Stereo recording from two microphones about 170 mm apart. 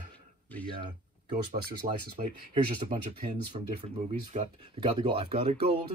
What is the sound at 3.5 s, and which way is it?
Speech, 40° right (ahead or behind).